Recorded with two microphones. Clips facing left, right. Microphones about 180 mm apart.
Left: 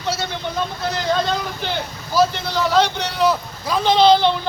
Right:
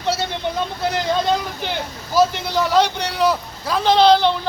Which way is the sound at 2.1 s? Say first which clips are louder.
Right 1 dB; 10° right (ahead or behind).